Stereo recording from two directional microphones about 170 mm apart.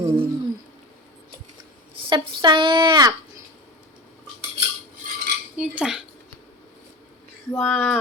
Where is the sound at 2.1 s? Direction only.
30° right (ahead or behind).